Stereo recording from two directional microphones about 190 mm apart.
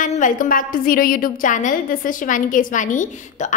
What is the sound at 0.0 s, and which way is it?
A woman's voice, 40° left (ahead or behind).